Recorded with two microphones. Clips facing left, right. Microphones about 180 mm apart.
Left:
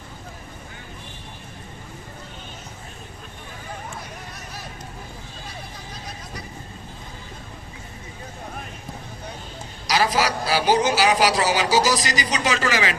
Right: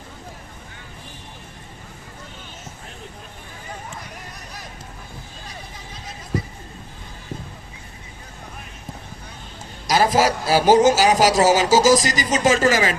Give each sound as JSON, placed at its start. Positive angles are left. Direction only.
{"t": 9.8, "sound": "a man's voice", "side_deg": -50}